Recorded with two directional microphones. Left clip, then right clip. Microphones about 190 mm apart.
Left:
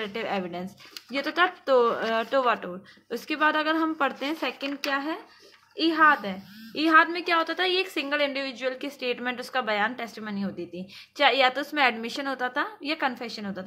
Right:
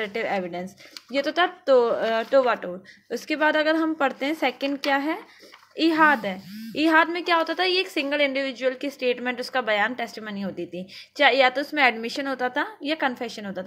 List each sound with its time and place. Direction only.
0.0 s a woman's voice: 10° right (ahead or behind)